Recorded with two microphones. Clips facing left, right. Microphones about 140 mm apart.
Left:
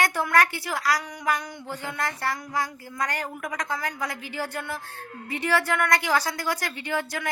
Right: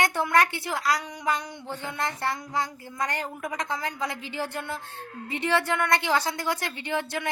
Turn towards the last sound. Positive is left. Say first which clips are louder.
# even
turn(degrees=-25)  # may be behind; listen again after turning